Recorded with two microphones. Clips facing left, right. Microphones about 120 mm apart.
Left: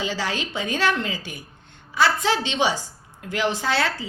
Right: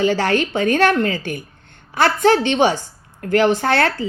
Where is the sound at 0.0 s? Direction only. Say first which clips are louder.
Right 10 dB; 55° right (ahead or behind).